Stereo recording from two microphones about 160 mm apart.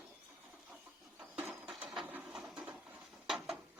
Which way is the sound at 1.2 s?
15° right (ahead or behind).